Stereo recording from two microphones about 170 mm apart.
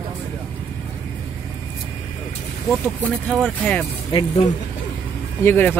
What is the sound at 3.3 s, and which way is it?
Speech, 5° left (ahead or behind).